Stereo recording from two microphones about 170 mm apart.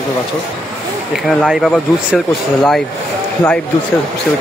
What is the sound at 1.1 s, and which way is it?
Speech, centre (ahead or behind).